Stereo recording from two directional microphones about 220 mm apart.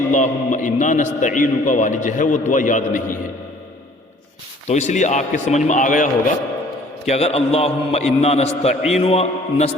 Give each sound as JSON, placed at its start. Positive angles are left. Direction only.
{"t": 0.1, "sound": "a man's voice", "side_deg": 35}
{"t": 4.7, "sound": "a man's voice", "side_deg": 30}